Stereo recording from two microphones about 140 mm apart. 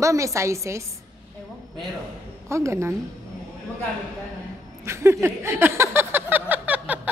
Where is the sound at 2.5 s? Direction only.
20° right (ahead or behind).